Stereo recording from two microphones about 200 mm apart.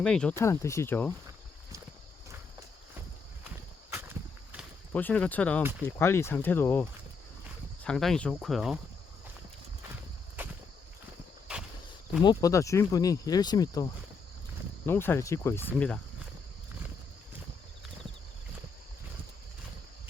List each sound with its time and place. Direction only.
0.0 s speech: 5° left (ahead or behind)
2.3 s walk: 10° right (ahead or behind)
4.9 s speech: 10° left (ahead or behind)
7.9 s speech: 5° left (ahead or behind)
10.4 s walk: 10° right (ahead or behind)
12.2 s speech: 20° left (ahead or behind)